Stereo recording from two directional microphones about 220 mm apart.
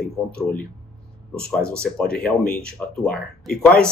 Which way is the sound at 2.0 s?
5° left (ahead or behind).